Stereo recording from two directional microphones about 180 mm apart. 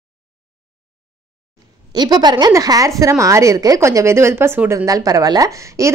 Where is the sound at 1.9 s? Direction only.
20° right (ahead or behind).